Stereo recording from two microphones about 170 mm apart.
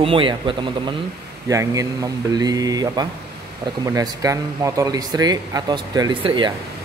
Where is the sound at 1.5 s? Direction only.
20° right (ahead or behind).